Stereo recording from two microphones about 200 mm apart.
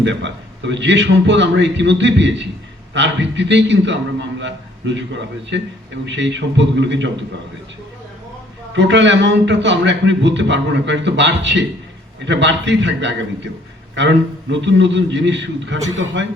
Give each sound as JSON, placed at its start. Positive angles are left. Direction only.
{"t": 0.0, "sound": "a man's voice", "side_deg": -65}
{"t": 8.7, "sound": "a man's voice", "side_deg": -65}